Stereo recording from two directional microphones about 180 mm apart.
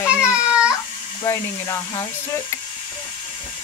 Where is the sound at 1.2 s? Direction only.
15° left (ahead or behind).